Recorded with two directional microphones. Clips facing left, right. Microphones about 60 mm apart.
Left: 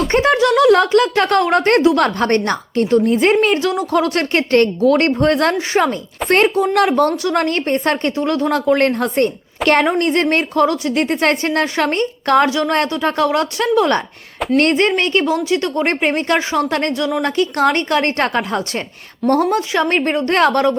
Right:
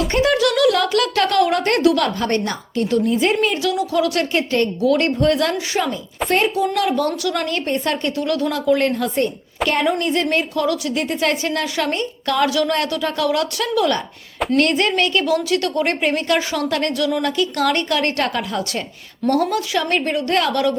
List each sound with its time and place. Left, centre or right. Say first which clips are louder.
0.1 s a woman's voice: left 5 dB; left
3.7 s a woman's voice: left 2 dB; left
4.3 s a woman's voice: left 5 dB; left
4.8 s a woman's voice: left 3 dB; left
8.1 s a woman's voice: left 3 dB; left
8.5 s a woman's voice: left 3 dB; left
12.5 s a woman's voice: left 2 dB; left
17.2 s a woman's voice: left 3 dB; left